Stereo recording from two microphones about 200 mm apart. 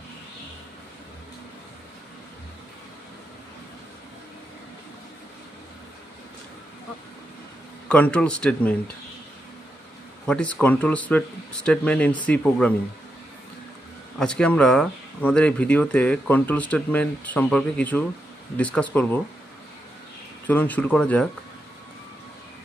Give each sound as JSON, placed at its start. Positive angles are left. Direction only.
{"t": 7.9, "sound": "speech", "side_deg": 5}
{"t": 10.2, "sound": "speech", "side_deg": 5}
{"t": 14.1, "sound": "speech", "side_deg": 5}
{"t": 20.4, "sound": "speech", "side_deg": 10}